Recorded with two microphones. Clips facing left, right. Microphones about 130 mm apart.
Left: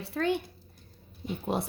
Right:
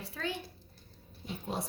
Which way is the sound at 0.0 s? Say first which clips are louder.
Left 9 dB; 60° left (ahead or behind).